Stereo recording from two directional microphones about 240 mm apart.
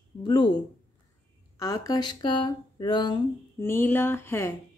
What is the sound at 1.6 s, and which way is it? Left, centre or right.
Speech, centre.